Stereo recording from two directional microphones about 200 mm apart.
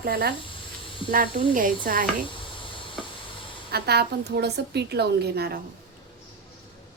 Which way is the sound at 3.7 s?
55° right (ahead or behind).